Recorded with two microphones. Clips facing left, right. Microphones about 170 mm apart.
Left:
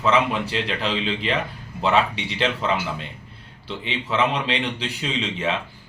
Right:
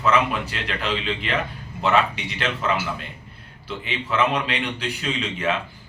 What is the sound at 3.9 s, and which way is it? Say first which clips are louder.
Speech: even; 30° left (ahead or behind).